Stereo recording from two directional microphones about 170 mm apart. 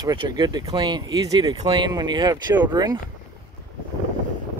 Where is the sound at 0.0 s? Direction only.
25° right (ahead or behind).